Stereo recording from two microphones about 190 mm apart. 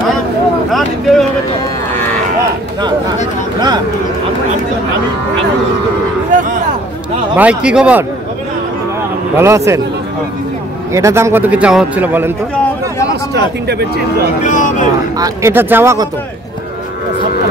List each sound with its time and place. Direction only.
0.7 s a sound: centre (ahead or behind)
6.3 s a sound: 45° right (ahead or behind)
7.3 s a man's voice: 5° right (ahead or behind)
9.4 s a man's voice: 15° right (ahead or behind)
10.9 s a man's voice: 15° right (ahead or behind)
13.1 s speech: 60° right (ahead or behind)
14.4 s speech: 40° left (ahead or behind)
15.1 s a man's voice: 15° right (ahead or behind)